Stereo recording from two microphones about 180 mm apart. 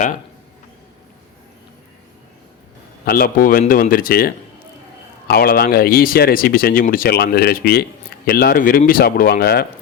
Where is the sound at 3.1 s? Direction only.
55° left (ahead or behind).